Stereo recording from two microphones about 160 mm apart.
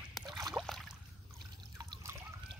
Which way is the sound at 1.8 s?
20° right (ahead or behind).